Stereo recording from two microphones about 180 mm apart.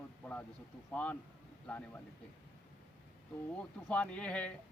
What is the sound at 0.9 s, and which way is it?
Speech, 5° left (ahead or behind).